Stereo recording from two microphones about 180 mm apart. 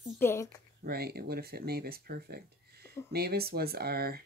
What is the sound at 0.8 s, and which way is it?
Speech, 60° right (ahead or behind).